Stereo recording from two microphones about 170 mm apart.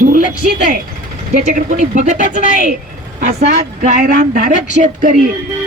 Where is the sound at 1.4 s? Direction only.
50° right (ahead or behind).